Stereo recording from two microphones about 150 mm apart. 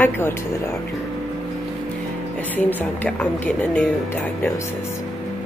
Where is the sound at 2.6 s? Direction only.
10° left (ahead or behind).